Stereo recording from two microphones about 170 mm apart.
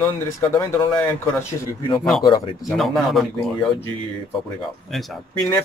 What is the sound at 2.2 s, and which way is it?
Speech, 25° left (ahead or behind).